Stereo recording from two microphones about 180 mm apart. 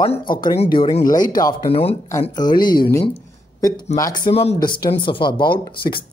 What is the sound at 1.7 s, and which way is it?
Speech, 35° left (ahead or behind).